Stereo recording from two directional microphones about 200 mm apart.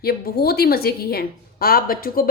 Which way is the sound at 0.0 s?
50° left (ahead or behind).